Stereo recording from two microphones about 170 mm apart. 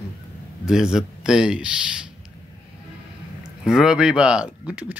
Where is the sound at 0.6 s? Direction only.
5° right (ahead or behind).